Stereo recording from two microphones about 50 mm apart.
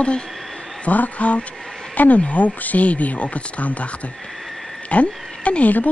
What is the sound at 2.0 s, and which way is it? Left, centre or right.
Speech, left.